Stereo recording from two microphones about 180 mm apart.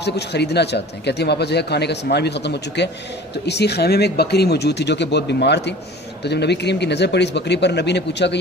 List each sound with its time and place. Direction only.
0.0 s speech: 70° left (ahead or behind)